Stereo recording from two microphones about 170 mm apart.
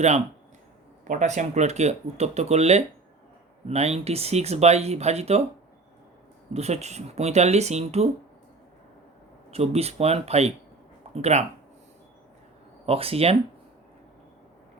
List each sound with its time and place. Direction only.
1.0 s speech: 45° right (ahead or behind)
6.5 s speech: 40° right (ahead or behind)
9.5 s speech: 35° right (ahead or behind)
12.8 s speech: 35° right (ahead or behind)